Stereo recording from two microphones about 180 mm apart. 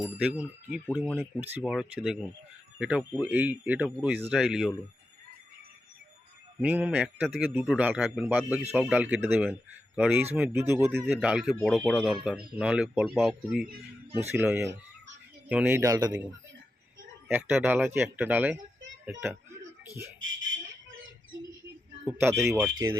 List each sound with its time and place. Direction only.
0.2 s a man's voice: 5° right (ahead or behind)
6.6 s a man's voice: 10° right (ahead or behind)
17.2 s a man's voice: 10° right (ahead or behind)
20.1 s a sound: 90° right
22.0 s a man's voice: 10° right (ahead or behind)